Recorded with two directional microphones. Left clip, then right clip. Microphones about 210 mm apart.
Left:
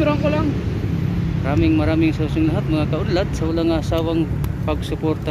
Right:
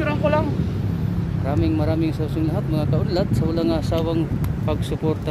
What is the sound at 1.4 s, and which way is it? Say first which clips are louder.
Speech: left 4 dB; 5° right (ahead or behind).